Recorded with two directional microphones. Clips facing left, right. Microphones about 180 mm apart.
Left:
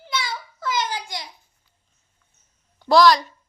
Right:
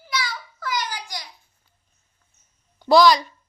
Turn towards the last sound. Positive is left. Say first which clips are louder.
# even
turn(degrees=0)  # may be behind; listen again after turning